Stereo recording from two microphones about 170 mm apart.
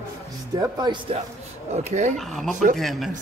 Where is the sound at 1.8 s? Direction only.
45° right (ahead or behind).